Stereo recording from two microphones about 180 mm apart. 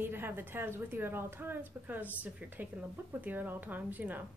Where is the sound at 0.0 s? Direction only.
10° right (ahead or behind).